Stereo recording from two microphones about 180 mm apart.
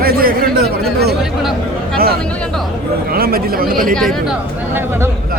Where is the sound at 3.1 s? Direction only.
55° right (ahead or behind).